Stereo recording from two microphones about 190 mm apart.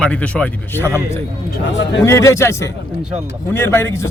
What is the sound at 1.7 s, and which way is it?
Speech, 70° left (ahead or behind).